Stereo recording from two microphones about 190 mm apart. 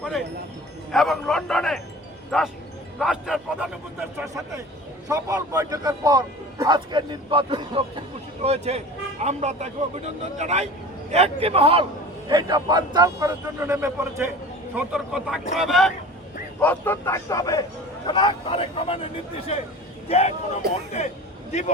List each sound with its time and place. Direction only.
0.0 s music: centre (ahead or behind)
2.3 s a man's voice: centre (ahead or behind)
3.0 s a sound: centre (ahead or behind)
5.0 s a man's voice: 20° right (ahead or behind); by 15.9 s centre (ahead or behind)
16.6 s a man's voice: 10° left (ahead or behind); by 21.1 s 35° left (ahead or behind)